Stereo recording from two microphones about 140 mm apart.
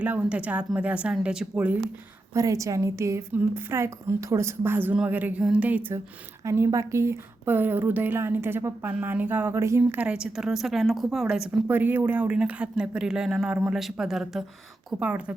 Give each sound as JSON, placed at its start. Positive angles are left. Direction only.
{"t": 0.0, "sound": "a woman's voice", "side_deg": -10}
{"t": 2.3, "sound": "a woman's voice", "side_deg": -25}
{"t": 11.7, "sound": "a woman's voice", "side_deg": -15}